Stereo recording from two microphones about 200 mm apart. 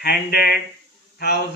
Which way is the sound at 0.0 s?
50° left (ahead or behind).